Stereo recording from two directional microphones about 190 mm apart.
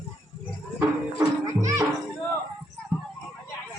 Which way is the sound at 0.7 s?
15° right (ahead or behind).